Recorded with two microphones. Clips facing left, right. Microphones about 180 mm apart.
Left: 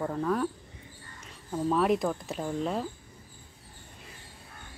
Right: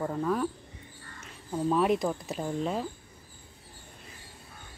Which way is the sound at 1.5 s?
Centre (ahead or behind).